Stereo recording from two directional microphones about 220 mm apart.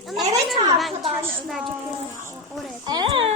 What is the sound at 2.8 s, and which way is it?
Speech, 20° right (ahead or behind).